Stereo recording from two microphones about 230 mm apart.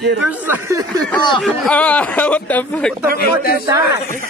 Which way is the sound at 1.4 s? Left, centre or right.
Centre.